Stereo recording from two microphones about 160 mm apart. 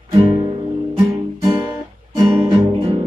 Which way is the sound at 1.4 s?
25° right (ahead or behind).